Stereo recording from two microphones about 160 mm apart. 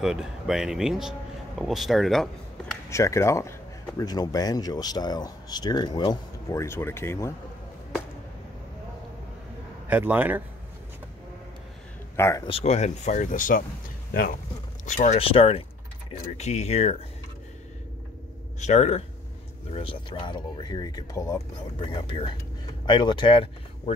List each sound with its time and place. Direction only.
0.0 s speech: 5° right (ahead or behind)
2.9 s speech: 20° left (ahead or behind)
9.8 s a man's voice: 10° right (ahead or behind)
12.2 s speech: 15° left (ahead or behind)
12.4 s speech: 40° left (ahead or behind); by 13.7 s 55° left (ahead or behind)
14.9 s speech: 50° left (ahead or behind)
15.1 s speech: 35° left (ahead or behind)
18.6 s speech: 45° left (ahead or behind)
19.7 s speech: 35° left (ahead or behind)